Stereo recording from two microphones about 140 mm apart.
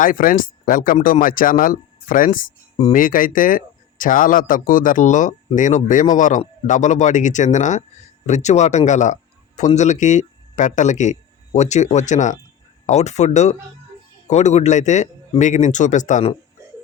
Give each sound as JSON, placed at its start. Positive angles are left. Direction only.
{"t": 0.0, "sound": "a man's voice", "side_deg": 80}